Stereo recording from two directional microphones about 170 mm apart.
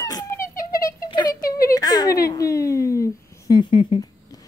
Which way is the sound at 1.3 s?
60° left (ahead or behind).